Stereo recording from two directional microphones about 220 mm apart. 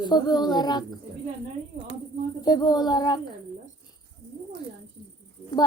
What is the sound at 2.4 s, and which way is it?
Speech, 20° left (ahead or behind).